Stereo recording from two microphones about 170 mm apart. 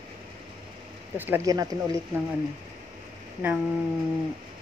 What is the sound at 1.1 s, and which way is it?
Speech, 10° right (ahead or behind).